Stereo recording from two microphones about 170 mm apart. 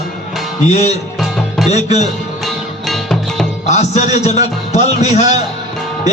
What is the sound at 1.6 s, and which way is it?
Speech, 40° left (ahead or behind).